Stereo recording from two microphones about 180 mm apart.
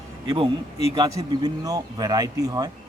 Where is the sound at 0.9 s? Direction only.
20° right (ahead or behind).